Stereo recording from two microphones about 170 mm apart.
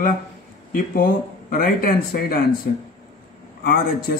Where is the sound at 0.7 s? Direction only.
55° left (ahead or behind).